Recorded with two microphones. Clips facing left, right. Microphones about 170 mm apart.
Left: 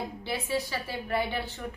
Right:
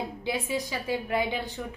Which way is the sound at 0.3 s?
15° right (ahead or behind).